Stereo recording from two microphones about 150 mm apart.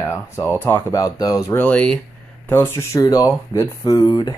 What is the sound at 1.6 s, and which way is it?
Speech, 10° left (ahead or behind).